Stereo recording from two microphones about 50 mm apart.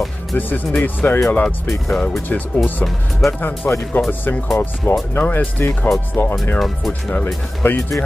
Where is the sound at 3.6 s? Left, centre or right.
Left.